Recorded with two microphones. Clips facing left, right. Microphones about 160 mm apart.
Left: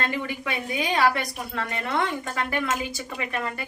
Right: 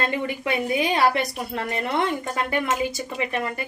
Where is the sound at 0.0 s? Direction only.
25° right (ahead or behind).